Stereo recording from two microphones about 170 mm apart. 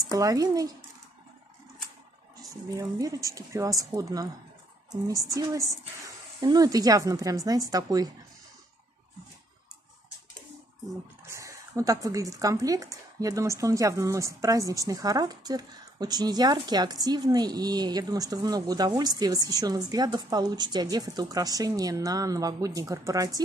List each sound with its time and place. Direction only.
0.1 s speech: 20° right (ahead or behind)
2.7 s speech: 20° right (ahead or behind)
5.3 s speech: 20° right (ahead or behind)
11.2 s speech: 15° right (ahead or behind)